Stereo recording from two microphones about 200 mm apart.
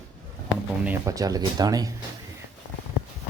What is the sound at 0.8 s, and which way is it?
Speech, 15° right (ahead or behind).